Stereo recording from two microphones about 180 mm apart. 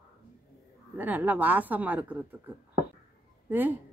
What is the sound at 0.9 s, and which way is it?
A woman's voice, 10° right (ahead or behind).